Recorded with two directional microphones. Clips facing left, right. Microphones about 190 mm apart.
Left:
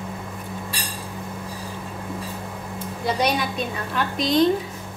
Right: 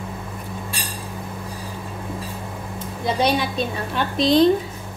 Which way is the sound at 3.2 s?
30° right (ahead or behind).